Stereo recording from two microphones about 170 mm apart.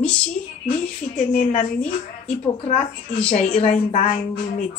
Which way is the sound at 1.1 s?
45° left (ahead or behind).